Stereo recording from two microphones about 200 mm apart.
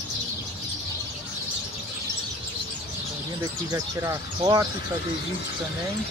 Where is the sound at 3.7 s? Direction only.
15° right (ahead or behind).